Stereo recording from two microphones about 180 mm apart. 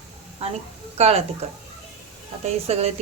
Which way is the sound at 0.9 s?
35° right (ahead or behind).